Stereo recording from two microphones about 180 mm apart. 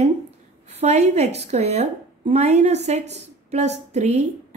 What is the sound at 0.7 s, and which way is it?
A woman's voice, 35° right (ahead or behind).